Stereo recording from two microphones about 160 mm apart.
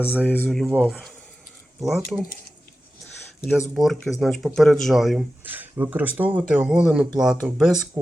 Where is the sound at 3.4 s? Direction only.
Centre (ahead or behind).